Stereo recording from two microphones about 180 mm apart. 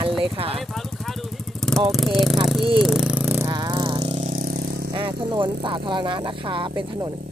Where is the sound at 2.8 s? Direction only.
Centre (ahead or behind); by 4.9 s 60° right (ahead or behind).